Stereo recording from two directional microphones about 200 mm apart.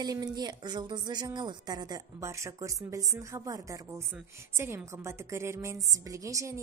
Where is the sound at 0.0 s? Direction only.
20° right (ahead or behind).